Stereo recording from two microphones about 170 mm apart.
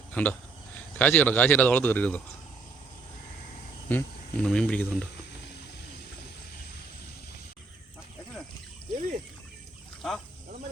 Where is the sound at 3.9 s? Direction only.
10° left (ahead or behind).